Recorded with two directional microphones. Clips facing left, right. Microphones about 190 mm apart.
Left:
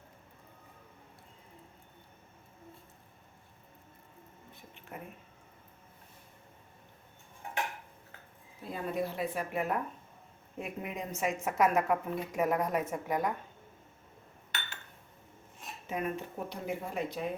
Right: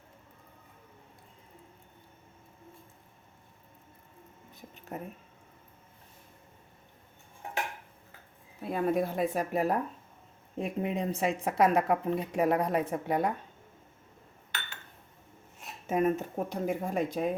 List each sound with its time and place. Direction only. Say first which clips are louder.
4.9 s speech: right 6 dB; 40° right (ahead or behind)
8.7 s speech: right 6 dB; 50° right (ahead or behind); by 13.3 s 30° right (ahead or behind)
15.9 s speech: right 8 dB; 45° right (ahead or behind)